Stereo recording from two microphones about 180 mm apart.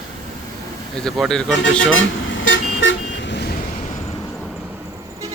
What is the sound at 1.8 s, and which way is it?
Vehicle, 90° left.